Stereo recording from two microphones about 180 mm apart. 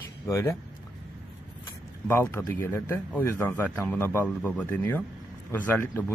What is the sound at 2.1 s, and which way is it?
A man's voice, 15° left (ahead or behind).